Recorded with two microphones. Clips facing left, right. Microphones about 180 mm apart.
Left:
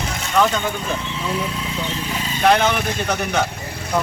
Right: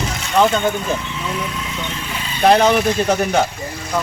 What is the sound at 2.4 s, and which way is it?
Speech, 35° right (ahead or behind).